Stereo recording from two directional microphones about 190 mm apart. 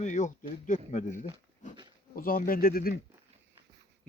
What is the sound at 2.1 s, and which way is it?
Speech, 50° left (ahead or behind).